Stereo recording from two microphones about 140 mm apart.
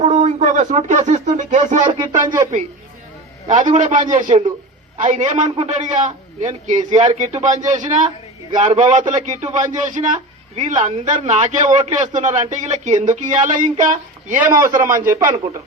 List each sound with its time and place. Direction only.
0.0 s speech: 55° right (ahead or behind)
3.4 s a man's voice: 60° right (ahead or behind)
4.3 s a man's voice: 40° right (ahead or behind)
4.9 s a man's voice: 60° right (ahead or behind)
14.3 s a man's voice: 15° right (ahead or behind)